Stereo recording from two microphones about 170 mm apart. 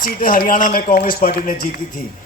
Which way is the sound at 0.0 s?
55° left (ahead or behind).